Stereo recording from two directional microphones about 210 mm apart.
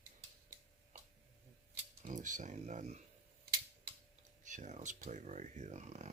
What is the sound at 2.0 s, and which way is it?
Speech, 35° right (ahead or behind).